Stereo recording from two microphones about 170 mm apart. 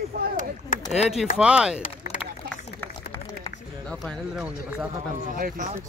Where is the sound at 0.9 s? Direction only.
Centre (ahead or behind).